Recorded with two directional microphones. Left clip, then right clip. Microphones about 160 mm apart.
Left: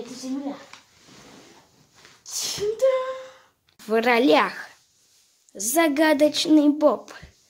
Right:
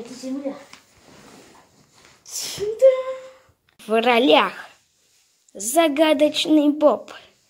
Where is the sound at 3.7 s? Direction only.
5° left (ahead or behind).